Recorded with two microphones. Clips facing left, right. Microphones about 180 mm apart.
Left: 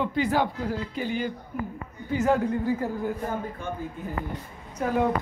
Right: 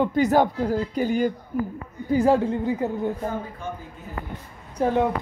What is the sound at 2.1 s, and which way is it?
Speech, 30° right (ahead or behind).